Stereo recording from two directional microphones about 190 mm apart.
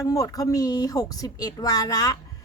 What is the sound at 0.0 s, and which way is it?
A woman's voice, 20° left (ahead or behind).